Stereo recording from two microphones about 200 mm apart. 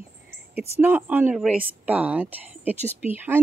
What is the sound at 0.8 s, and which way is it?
Speech, 10° right (ahead or behind).